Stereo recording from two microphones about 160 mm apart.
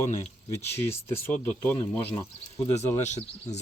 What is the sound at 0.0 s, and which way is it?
Speech, 50° left (ahead or behind).